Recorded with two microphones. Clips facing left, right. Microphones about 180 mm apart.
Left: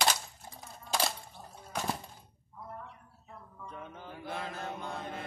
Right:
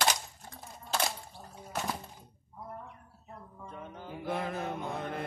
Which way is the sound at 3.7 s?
5° right (ahead or behind).